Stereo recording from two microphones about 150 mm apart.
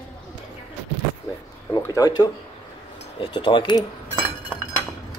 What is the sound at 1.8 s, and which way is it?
Speech, 25° left (ahead or behind).